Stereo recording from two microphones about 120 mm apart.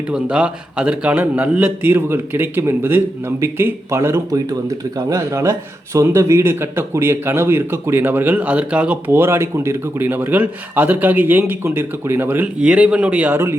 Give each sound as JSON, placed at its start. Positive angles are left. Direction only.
{"t": 0.1, "sound": "a man's voice", "side_deg": -10}